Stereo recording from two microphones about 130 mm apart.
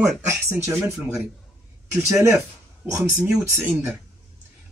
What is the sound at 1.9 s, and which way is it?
Speech, 20° right (ahead or behind).